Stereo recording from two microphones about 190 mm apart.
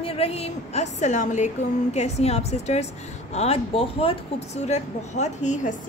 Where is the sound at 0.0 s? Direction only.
30° left (ahead or behind).